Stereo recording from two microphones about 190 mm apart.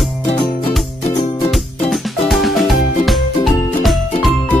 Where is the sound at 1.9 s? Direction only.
Centre (ahead or behind).